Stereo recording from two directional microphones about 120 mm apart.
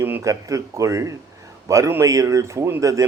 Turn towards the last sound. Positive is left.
turn(degrees=-25)  # may be behind; listen again after turning